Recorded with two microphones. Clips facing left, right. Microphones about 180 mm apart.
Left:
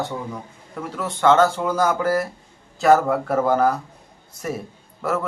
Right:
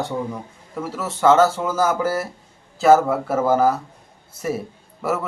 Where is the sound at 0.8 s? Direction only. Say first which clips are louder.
Right 1 dB; 5° right (ahead or behind).